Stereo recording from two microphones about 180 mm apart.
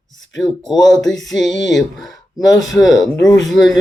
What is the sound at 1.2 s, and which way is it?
Speech, centre (ahead or behind).